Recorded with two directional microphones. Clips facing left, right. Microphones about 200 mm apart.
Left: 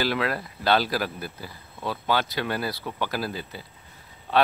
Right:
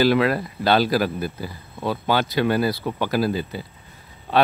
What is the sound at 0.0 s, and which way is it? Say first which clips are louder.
Speech: right 8 dB; 10° right (ahead or behind).